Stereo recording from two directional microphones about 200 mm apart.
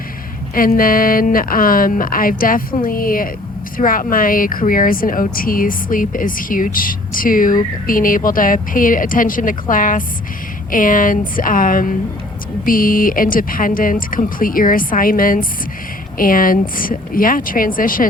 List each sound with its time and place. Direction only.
0.5 s speech: 45° left (ahead or behind)